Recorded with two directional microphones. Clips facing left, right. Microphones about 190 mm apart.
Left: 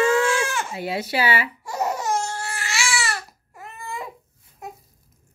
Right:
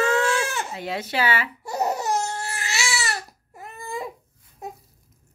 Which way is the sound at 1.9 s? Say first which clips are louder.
Even; 20° right (ahead or behind).